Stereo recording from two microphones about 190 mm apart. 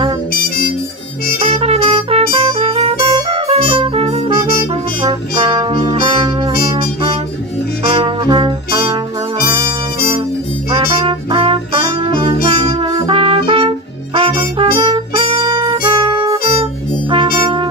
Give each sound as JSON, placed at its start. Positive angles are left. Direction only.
{"t": 1.4, "sound": "music", "side_deg": -30}
{"t": 5.4, "sound": "brass instrument", "side_deg": -25}
{"t": 7.8, "sound": "brass instrument", "side_deg": -25}
{"t": 10.7, "sound": "music", "side_deg": -25}
{"t": 12.6, "sound": "brass instrument", "side_deg": -25}
{"t": 17.1, "sound": "music", "side_deg": -25}